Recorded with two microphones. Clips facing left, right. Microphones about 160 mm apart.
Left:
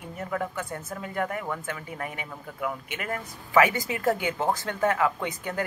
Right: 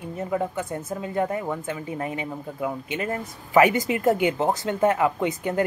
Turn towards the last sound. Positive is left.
turn(degrees=-20)  # may be behind; listen again after turning